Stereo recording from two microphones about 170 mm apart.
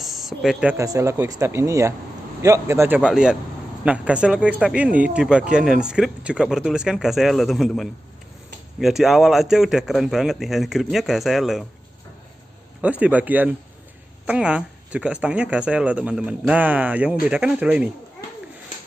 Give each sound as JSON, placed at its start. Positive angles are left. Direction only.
{"t": 0.0, "sound": "speech", "side_deg": 0}
{"t": 0.7, "sound": "speech", "side_deg": -20}
{"t": 3.0, "sound": "a man's voice", "side_deg": -5}
{"t": 12.8, "sound": "speech", "side_deg": -10}